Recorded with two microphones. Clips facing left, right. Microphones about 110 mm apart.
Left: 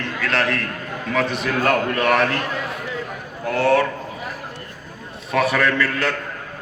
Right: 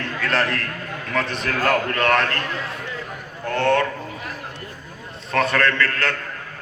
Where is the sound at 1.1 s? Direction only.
5° left (ahead or behind).